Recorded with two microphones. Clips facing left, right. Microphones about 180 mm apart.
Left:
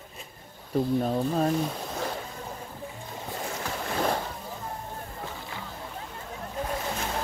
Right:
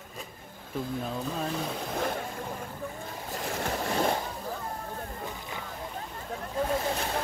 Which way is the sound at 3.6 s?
40° right (ahead or behind).